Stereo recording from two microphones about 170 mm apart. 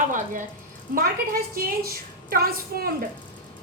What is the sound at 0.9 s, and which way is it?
A woman's voice, 60° right (ahead or behind).